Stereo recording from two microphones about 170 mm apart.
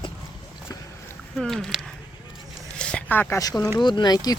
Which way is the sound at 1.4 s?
5° left (ahead or behind).